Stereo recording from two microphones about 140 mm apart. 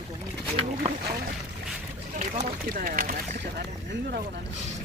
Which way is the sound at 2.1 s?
80° right.